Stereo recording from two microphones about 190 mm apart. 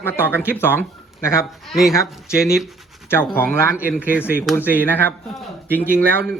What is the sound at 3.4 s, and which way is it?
Speech, 10° left (ahead or behind).